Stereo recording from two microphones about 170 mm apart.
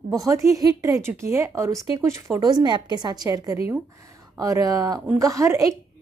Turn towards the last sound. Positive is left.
turn(degrees=-20)  # may be behind; listen again after turning